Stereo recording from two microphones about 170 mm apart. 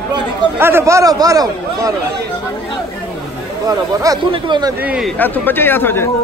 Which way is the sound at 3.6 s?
20° right (ahead or behind).